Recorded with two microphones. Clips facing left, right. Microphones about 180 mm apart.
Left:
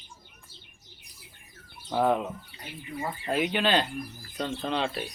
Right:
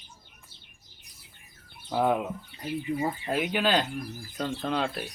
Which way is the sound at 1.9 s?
5° right (ahead or behind).